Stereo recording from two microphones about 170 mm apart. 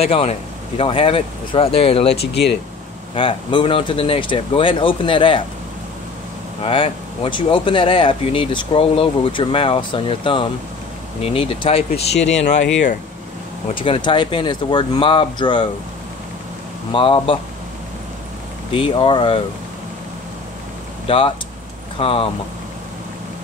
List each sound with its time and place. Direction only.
0.0 s speech: 35° left (ahead or behind)
2.1 s speech: 75° left (ahead or behind)
3.2 s speech: 30° left (ahead or behind)
6.6 s speech: 30° left (ahead or behind)
13.7 s speech: 30° left (ahead or behind)
16.9 s speech: 30° left (ahead or behind)
18.7 s speech: 30° left (ahead or behind)
21.1 s speech: 30° left (ahead or behind)